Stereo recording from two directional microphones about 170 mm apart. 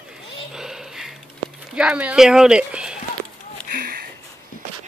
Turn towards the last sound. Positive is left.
turn(degrees=-60)  # may be behind; listen again after turning